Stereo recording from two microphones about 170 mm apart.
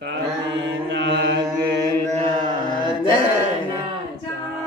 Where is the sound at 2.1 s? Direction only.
30° right (ahead or behind).